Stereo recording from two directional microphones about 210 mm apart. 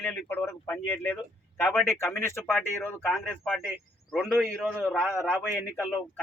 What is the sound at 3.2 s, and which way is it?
A man's voice, centre (ahead or behind).